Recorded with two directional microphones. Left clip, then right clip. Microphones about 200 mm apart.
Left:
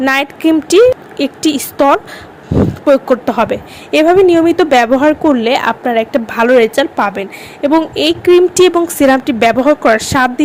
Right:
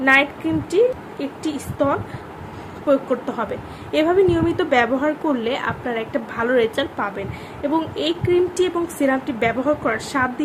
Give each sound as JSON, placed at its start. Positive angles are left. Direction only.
{"t": 0.0, "sound": "a woman's voice", "side_deg": 50}